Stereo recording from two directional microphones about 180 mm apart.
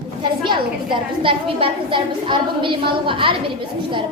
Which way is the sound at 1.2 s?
30° right (ahead or behind).